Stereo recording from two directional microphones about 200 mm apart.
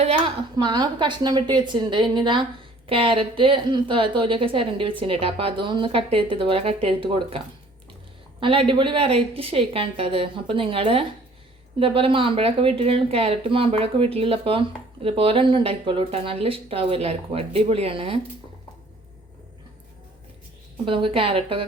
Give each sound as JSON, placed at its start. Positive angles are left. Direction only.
{"t": 0.0, "sound": "a woman's voice", "side_deg": -30}
{"t": 20.8, "sound": "a woman's voice", "side_deg": -25}